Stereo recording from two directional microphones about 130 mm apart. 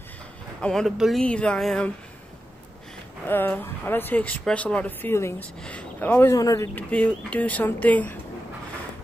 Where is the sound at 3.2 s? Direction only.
15° left (ahead or behind).